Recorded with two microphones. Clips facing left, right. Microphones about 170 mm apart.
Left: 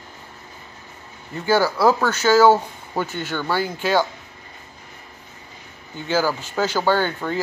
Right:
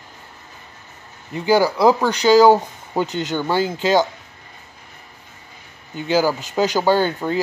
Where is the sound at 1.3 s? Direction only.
15° right (ahead or behind).